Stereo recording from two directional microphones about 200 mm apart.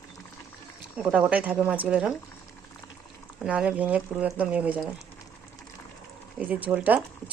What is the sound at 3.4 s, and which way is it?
Speech, 5° right (ahead or behind).